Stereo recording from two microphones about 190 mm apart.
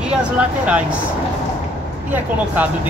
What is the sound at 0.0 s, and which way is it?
Speech, 5° right (ahead or behind).